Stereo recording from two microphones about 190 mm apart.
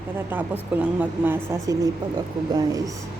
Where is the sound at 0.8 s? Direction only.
10° right (ahead or behind).